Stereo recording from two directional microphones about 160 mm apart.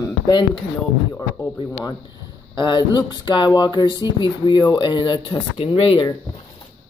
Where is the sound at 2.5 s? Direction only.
30° left (ahead or behind).